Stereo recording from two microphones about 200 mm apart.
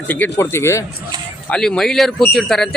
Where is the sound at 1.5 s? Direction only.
5° left (ahead or behind).